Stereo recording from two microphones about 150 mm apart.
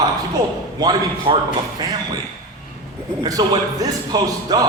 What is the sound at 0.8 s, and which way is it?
Speech, 25° right (ahead or behind).